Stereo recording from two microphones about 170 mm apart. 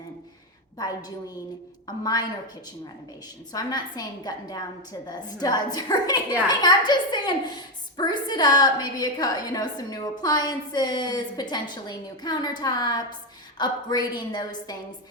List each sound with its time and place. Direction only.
0.8 s a woman's voice: 25° left (ahead or behind)
3.5 s a woman's voice: 25° left (ahead or behind)